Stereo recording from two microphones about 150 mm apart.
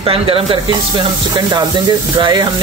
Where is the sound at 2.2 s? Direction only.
30° right (ahead or behind).